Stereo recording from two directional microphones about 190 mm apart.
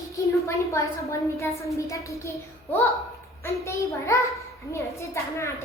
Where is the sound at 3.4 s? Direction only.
15° left (ahead or behind).